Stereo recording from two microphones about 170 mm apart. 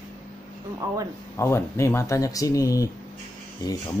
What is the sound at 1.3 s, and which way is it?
Speech, 15° left (ahead or behind).